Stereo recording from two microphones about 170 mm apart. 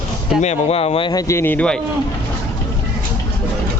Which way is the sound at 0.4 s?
40° left (ahead or behind).